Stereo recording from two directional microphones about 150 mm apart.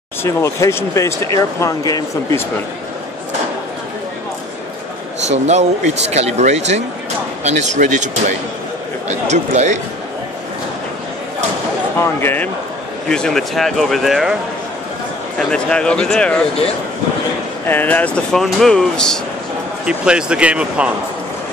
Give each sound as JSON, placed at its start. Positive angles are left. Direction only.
{"t": 0.2, "sound": "speech", "side_deg": 20}
{"t": 5.3, "sound": "speech", "side_deg": -50}
{"t": 12.0, "sound": "speech", "side_deg": 15}
{"t": 13.1, "sound": "speech", "side_deg": 5}
{"t": 15.3, "sound": "speech", "side_deg": 5}
{"t": 17.6, "sound": "speech", "side_deg": 10}
{"t": 19.9, "sound": "speech", "side_deg": -5}